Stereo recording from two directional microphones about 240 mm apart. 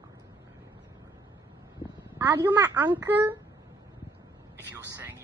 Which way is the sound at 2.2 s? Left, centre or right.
Centre.